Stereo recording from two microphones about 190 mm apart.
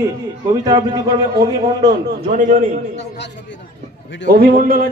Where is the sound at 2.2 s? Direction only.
45° right (ahead or behind).